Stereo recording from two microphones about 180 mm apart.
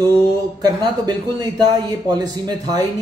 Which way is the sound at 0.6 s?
25° right (ahead or behind).